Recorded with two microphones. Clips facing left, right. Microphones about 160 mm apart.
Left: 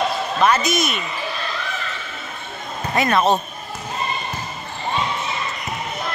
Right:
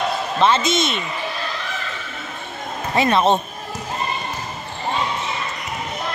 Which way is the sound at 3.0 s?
25° right (ahead or behind).